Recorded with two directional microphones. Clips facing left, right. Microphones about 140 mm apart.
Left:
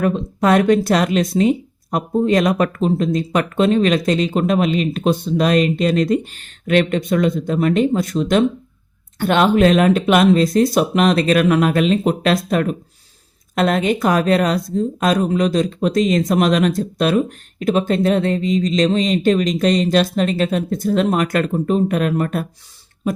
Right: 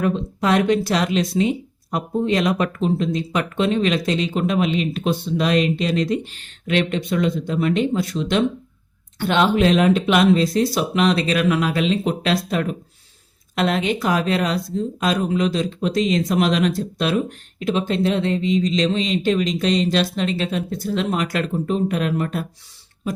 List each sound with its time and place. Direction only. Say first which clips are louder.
0.0 s speech: left 4 dB; 50° left (ahead or behind)